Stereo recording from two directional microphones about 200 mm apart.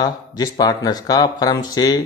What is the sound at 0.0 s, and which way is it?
Speech, 20° left (ahead or behind).